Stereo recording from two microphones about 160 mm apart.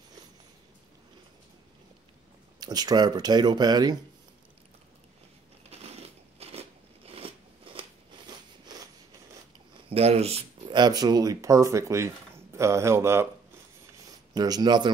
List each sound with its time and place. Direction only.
2.6 s speech: 25° right (ahead or behind)
5.7 s a sound: 40° right (ahead or behind)
7.1 s crunch: 35° right (ahead or behind)
9.8 s a sound: 40° right (ahead or behind)
10.8 s speech: 25° right (ahead or behind)
14.3 s speech: 25° right (ahead or behind)